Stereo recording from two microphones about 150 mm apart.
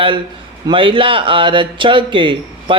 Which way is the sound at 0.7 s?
35° right (ahead or behind).